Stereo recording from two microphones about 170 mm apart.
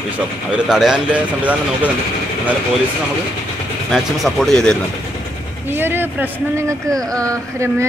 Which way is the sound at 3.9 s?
Centre (ahead or behind).